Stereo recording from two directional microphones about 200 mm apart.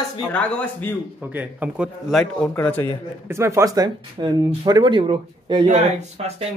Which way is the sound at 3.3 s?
15° right (ahead or behind).